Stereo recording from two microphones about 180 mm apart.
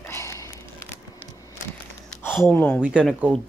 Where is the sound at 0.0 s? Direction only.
15° left (ahead or behind).